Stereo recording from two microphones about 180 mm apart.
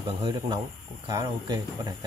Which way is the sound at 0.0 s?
25° right (ahead or behind).